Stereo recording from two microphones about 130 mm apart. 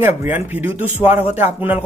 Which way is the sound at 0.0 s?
15° right (ahead or behind).